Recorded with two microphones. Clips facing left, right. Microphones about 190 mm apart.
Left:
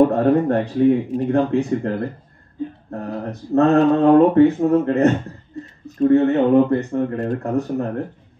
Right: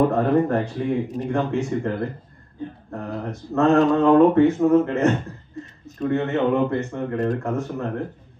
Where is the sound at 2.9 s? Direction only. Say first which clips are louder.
Even; 35° left (ahead or behind).